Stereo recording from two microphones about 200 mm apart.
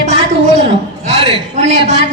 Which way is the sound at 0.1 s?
35° right (ahead or behind).